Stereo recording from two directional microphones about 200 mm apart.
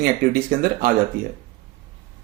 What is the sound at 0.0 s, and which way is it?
Speech, 50° right (ahead or behind).